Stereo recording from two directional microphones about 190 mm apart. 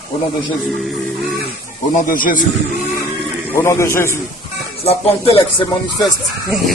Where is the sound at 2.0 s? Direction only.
45° left (ahead or behind).